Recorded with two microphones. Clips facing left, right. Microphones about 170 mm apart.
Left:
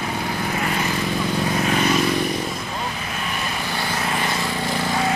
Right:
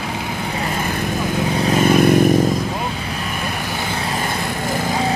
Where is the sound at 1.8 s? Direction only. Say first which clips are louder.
Right 9 dB; 55° right (ahead or behind).